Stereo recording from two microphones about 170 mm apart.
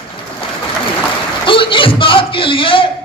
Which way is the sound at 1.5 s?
30° left (ahead or behind).